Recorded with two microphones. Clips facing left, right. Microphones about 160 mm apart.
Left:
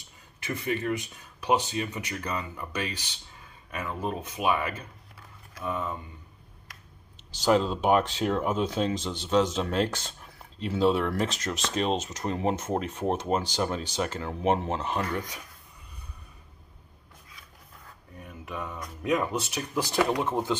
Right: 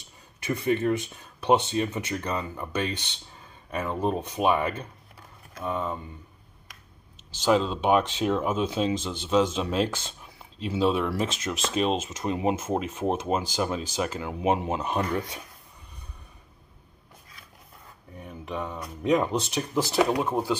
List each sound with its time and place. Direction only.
0.4 s speech: 25° right (ahead or behind)
7.3 s speech: centre (ahead or behind); by 15.4 s 25° right (ahead or behind)
18.2 s a sound: 25° right (ahead or behind)
19.4 s speech: 30° right (ahead or behind)
20.0 s speech: 15° right (ahead or behind)